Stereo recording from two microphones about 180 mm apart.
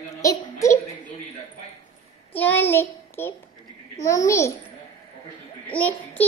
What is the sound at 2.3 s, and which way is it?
Child singing, 10° left (ahead or behind).